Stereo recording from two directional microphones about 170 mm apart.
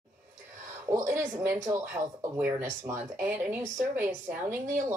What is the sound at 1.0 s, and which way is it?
Speech, 15° right (ahead or behind).